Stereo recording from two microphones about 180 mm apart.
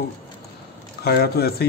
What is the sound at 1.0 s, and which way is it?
Speech, 60° left (ahead or behind).